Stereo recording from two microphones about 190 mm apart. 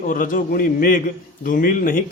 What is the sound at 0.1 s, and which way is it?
Speech, 45° left (ahead or behind).